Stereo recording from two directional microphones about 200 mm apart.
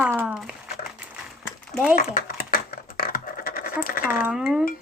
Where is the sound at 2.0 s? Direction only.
45° left (ahead or behind).